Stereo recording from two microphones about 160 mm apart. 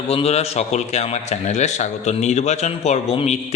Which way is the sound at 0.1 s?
40° left (ahead or behind).